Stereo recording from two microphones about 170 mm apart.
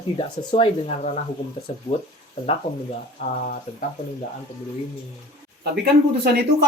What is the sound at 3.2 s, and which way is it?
Speech, 45° left (ahead or behind).